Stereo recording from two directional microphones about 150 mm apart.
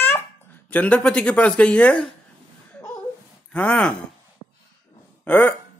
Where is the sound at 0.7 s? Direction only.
10° left (ahead or behind).